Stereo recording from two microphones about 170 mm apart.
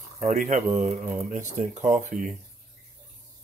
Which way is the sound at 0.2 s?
45° right (ahead or behind).